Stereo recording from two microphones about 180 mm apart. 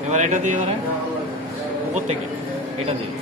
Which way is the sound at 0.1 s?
40° right (ahead or behind).